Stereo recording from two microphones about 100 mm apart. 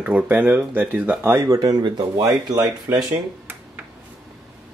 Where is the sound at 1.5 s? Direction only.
40° right (ahead or behind).